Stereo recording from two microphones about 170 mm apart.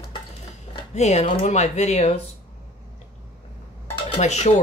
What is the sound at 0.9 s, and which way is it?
Speech, 40° left (ahead or behind).